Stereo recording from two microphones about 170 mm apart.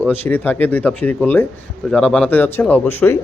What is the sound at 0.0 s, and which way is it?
A man's voice, 10° left (ahead or behind).